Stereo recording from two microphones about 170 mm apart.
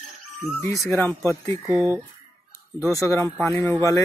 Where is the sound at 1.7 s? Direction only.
15° right (ahead or behind).